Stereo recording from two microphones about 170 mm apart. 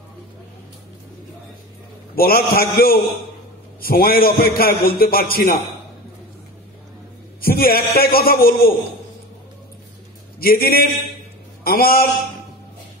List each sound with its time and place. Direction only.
2.1 s a man's voice: 60° left (ahead or behind)
7.4 s a man's voice: 60° left (ahead or behind)
10.4 s a man's voice: 60° left (ahead or behind)